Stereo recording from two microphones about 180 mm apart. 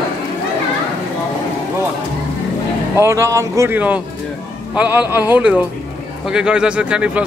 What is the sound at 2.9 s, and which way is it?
A man's voice, 15° right (ahead or behind).